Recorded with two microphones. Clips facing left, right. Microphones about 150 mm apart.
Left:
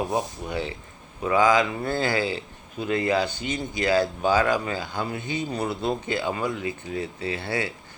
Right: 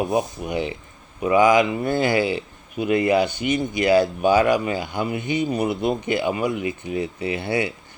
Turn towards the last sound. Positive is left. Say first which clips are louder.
# right 5 dB
turn(degrees=-20)  # may be behind; listen again after turning